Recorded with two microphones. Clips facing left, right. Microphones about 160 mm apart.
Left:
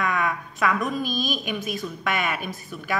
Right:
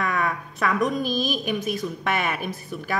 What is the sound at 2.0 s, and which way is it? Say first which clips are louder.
Speech: left 1 dB; 30° right (ahead or behind).